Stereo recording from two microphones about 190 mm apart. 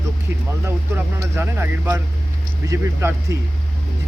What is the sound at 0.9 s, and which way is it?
A man's voice, 15° right (ahead or behind).